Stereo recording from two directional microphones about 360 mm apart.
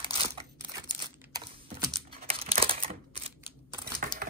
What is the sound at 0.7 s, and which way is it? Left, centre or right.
Crumpling, centre.